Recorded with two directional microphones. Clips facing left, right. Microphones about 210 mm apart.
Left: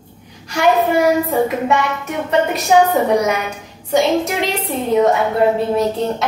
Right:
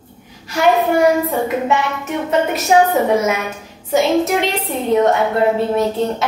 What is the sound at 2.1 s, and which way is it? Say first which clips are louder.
A woman's voice: right 1 dB; centre (ahead or behind).